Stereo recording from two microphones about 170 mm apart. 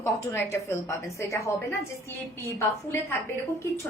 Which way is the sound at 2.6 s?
15° left (ahead or behind).